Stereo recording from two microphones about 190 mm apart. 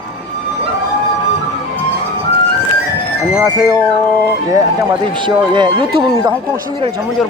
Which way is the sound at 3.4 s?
20° right (ahead or behind).